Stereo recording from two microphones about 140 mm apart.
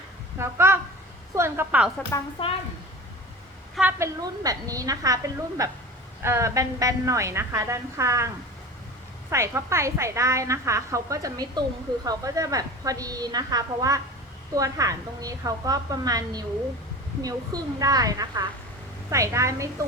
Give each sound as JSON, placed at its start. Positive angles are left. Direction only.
{"t": 0.3, "sound": "a woman's voice", "side_deg": -20}
{"t": 2.1, "sound": "a woman's voice", "side_deg": 20}
{"t": 3.9, "sound": "a woman's voice", "side_deg": -25}
{"t": 9.3, "sound": "a woman's voice", "side_deg": -20}